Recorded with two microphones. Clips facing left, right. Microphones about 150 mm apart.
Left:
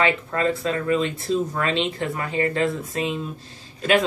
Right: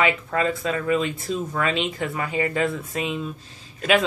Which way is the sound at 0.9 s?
35° left (ahead or behind).